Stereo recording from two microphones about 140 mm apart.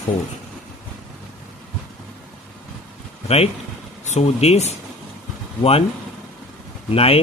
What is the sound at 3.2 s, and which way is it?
Speech, 45° left (ahead or behind).